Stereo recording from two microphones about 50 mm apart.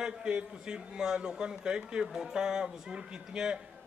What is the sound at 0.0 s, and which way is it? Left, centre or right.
A man's voice, centre.